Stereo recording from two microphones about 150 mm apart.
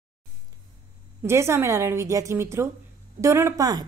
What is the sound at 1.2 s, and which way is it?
A woman's voice, 15° right (ahead or behind).